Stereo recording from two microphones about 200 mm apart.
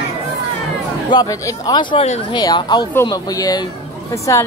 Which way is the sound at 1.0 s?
20° left (ahead or behind).